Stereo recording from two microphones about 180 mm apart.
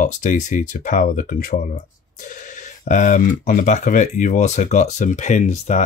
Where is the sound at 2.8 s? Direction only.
45° left (ahead or behind).